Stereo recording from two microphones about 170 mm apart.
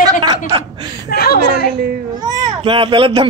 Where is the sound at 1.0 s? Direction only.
65° left (ahead or behind).